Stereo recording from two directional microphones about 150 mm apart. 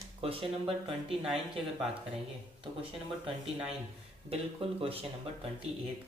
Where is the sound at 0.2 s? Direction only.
40° right (ahead or behind).